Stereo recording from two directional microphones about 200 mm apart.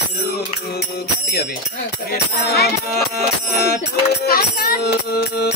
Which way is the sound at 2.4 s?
50° left (ahead or behind).